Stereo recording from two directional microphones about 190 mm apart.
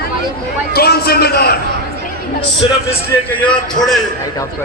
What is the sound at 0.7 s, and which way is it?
Speech, 55° left (ahead or behind).